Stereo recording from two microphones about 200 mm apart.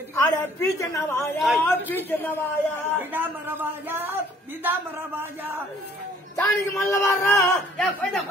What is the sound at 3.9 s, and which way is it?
Speech, 10° right (ahead or behind).